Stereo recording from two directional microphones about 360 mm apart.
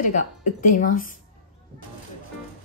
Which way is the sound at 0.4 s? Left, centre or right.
Left.